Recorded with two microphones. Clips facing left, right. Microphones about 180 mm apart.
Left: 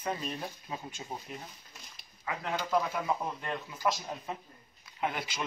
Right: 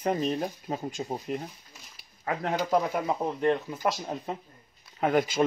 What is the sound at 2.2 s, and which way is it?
Speech, 45° right (ahead or behind).